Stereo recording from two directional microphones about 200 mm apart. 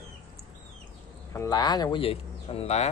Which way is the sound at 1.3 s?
15° left (ahead or behind).